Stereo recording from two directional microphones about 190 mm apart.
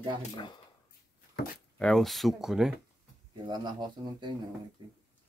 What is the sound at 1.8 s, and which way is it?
Speech, 5° left (ahead or behind).